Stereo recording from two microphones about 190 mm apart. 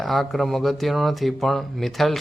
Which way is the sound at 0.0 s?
Centre (ahead or behind).